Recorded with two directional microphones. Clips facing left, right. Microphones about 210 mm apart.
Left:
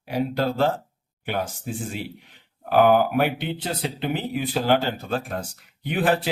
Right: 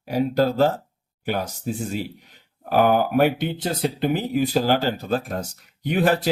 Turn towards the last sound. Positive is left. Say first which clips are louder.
# right 3 dB
turn(degrees=-40)  # may be behind; listen again after turning